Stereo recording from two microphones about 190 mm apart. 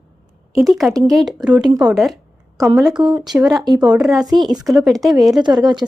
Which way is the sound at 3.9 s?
5° right (ahead or behind).